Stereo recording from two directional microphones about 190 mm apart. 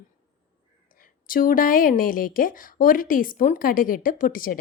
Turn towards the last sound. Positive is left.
turn(degrees=45)  # may be behind; listen again after turning